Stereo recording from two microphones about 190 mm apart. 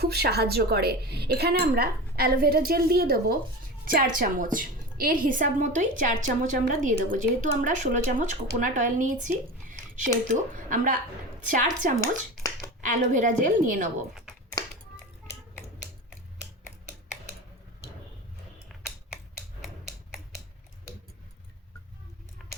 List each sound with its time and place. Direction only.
0.0 s a woman's voice: 55° right (ahead or behind); by 9.3 s 40° right (ahead or behind)
9.3 s squish: 45° right (ahead or behind)
10.5 s a woman's voice: 45° right (ahead or behind)
11.9 s a sound: 15° left (ahead or behind)
12.8 s a woman's voice: 45° right (ahead or behind)
14.1 s typing: centre (ahead or behind)
18.7 s typing: centre (ahead or behind)
22.4 s a sound: centre (ahead or behind)